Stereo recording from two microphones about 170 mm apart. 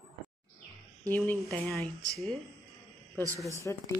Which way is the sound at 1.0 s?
10° left (ahead or behind).